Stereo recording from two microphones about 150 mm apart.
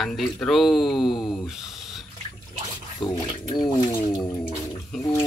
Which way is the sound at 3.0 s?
30° left (ahead or behind).